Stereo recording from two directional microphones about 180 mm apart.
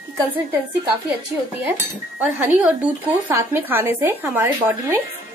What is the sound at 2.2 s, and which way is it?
Speech, 5° right (ahead or behind).